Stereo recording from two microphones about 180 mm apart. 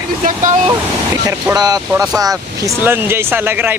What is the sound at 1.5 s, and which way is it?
Speech, 20° right (ahead or behind).